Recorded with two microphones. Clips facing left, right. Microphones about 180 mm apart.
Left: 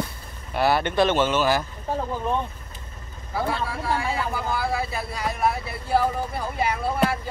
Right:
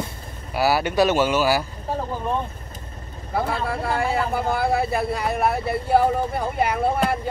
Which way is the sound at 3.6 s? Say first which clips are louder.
Right 3 dB; 55° right (ahead or behind).